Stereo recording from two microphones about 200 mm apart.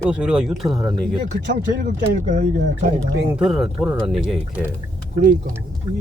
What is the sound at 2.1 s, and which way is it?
Speech, 35° right (ahead or behind).